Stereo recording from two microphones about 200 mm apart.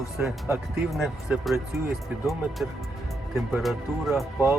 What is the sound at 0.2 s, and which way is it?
Speech, 15° right (ahead or behind).